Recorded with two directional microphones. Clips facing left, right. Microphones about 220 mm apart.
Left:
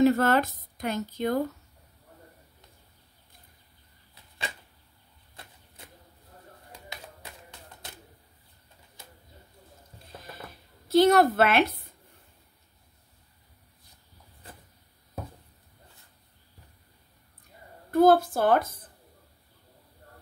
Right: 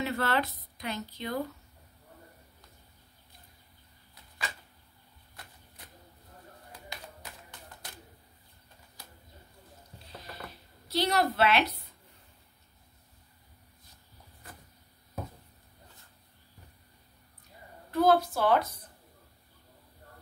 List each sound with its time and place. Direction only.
0.0 s speech: 45° left (ahead or behind)
7.8 s a sound: 25° left (ahead or behind)
10.9 s speech: 50° left (ahead or behind)
17.9 s speech: 50° left (ahead or behind)